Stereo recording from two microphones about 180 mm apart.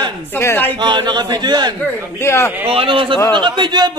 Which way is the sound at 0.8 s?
25° right (ahead or behind).